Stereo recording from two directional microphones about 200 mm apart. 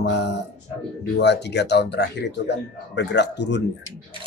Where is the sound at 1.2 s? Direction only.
60° left (ahead or behind).